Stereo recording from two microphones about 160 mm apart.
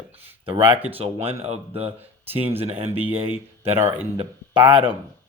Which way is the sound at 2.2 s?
10° right (ahead or behind).